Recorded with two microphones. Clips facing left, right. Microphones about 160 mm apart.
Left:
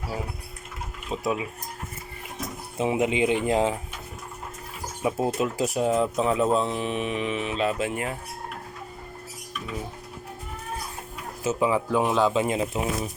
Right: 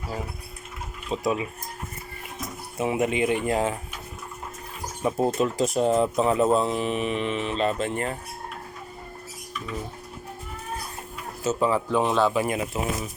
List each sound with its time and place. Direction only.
1.1 s speech: 5° left (ahead or behind)
2.7 s speech: 20° left (ahead or behind)
5.0 s speech: centre (ahead or behind)
11.4 s speech: 15° left (ahead or behind)